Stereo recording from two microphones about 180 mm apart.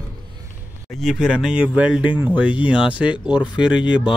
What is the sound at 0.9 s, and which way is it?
Speech, centre (ahead or behind).